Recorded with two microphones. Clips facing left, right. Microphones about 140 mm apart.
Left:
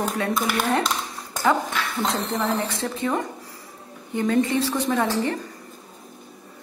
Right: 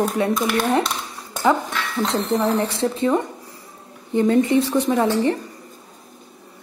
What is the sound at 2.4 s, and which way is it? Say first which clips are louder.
Speech: right 5 dB; 25° right (ahead or behind).